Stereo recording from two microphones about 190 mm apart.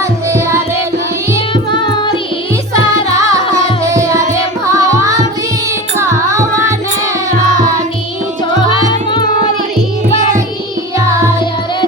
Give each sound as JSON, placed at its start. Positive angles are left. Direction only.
{"t": 0.0, "sound": "music", "side_deg": -15}
{"t": 1.5, "sound": "music", "side_deg": 25}
{"t": 3.2, "sound": "music", "side_deg": -15}
{"t": 4.6, "sound": "carnatic music", "side_deg": -15}
{"t": 6.0, "sound": "music", "side_deg": -15}
{"t": 8.9, "sound": "tabla", "side_deg": 25}